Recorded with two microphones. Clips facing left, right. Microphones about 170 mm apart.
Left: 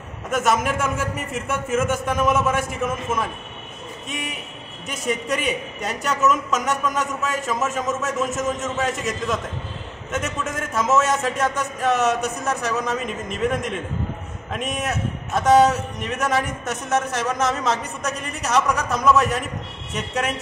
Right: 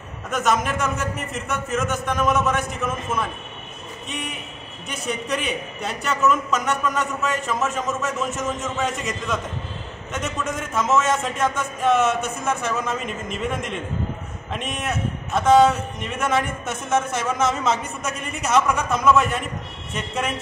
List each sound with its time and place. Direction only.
0.3 s a man's voice: 5° left (ahead or behind)
10.4 s a man's voice: 5° left (ahead or behind)
12.0 s speech: 40° left (ahead or behind)
12.6 s a man's voice: centre (ahead or behind)